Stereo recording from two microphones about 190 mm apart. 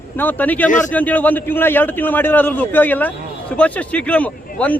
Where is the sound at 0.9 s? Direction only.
10° left (ahead or behind).